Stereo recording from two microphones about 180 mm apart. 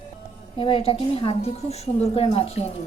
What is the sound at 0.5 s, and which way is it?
A woman's voice, 30° left (ahead or behind).